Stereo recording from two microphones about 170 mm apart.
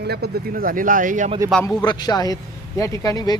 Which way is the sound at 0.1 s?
65° right (ahead or behind).